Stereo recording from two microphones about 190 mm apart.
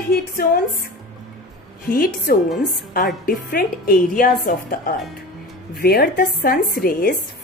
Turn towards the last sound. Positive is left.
turn(degrees=50)  # may be behind; listen again after turning